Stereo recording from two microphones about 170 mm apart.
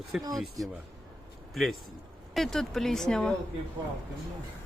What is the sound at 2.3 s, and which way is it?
Speech, centre (ahead or behind).